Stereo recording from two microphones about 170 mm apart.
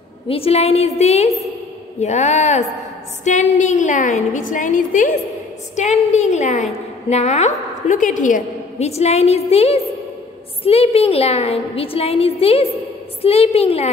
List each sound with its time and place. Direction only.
0.3 s a woman's voice: 35° left (ahead or behind)